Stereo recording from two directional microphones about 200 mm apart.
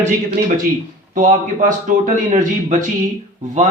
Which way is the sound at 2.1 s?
40° right (ahead or behind).